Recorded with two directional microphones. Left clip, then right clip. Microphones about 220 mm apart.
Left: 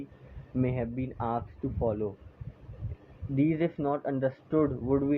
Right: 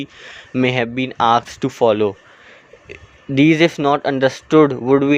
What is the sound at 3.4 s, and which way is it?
Speech, 50° right (ahead or behind).